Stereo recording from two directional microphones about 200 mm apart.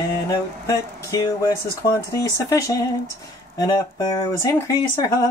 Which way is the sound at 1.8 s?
55° left (ahead or behind).